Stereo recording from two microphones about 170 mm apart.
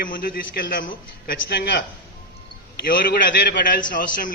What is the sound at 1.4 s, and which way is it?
Speech, 75° left (ahead or behind).